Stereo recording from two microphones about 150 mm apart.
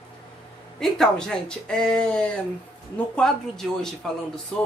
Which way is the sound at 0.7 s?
5° left (ahead or behind).